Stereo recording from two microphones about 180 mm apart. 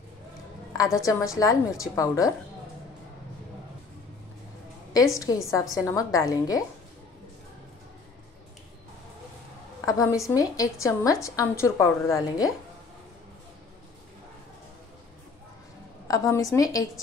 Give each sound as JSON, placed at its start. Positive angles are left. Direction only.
{"t": 0.9, "sound": "a woman's voice", "side_deg": 15}
{"t": 5.1, "sound": "a woman's voice", "side_deg": 20}
{"t": 9.8, "sound": "a woman's voice", "side_deg": 20}
{"t": 16.1, "sound": "a woman's voice", "side_deg": 15}